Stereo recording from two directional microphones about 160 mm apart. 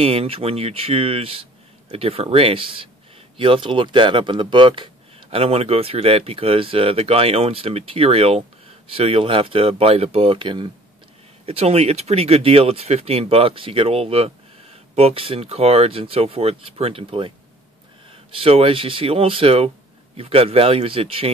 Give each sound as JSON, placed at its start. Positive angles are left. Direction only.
{"t": 0.0, "sound": "speech", "side_deg": -35}
{"t": 18.4, "sound": "speech", "side_deg": -35}